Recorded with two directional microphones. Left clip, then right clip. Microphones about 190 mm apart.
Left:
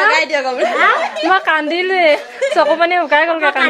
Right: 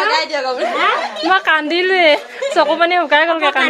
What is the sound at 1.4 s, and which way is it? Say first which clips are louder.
A woman's voice: right 1 dB; 10° right (ahead or behind).